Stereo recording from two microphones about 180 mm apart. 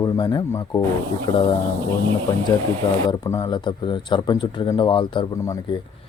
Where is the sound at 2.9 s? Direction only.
20° left (ahead or behind).